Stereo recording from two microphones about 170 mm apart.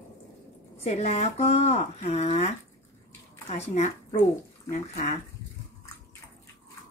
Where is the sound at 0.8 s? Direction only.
40° left (ahead or behind).